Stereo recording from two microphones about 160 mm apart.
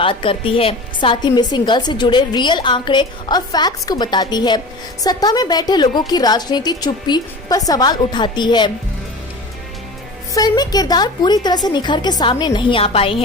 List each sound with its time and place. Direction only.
0.0 s a woman's voice: 35° left (ahead or behind)
10.3 s a woman's voice: 25° left (ahead or behind)